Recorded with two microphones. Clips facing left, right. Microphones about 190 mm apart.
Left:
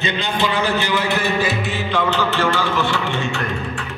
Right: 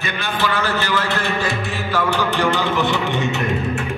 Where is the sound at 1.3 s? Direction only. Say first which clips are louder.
Left 2 dB; centre (ahead or behind).